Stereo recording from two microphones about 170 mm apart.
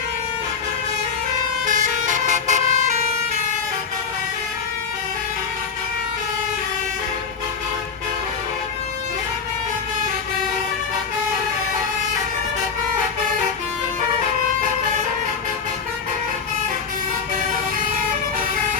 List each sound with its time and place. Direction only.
1.6 s vehicle: 45° right (ahead or behind)
17.5 s vehicle: 55° right (ahead or behind)